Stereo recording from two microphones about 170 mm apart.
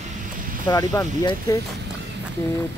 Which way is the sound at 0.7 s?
20° left (ahead or behind).